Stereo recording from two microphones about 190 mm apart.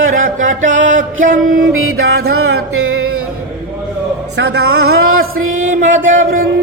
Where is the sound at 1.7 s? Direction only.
90° right.